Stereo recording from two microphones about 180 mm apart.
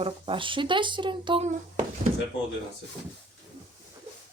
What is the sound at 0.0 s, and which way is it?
Speech, 30° right (ahead or behind).